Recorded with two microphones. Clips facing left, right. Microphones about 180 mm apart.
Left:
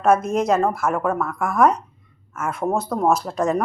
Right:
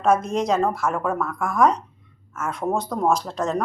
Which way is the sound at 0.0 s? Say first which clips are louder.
Left 2 dB; 5° left (ahead or behind).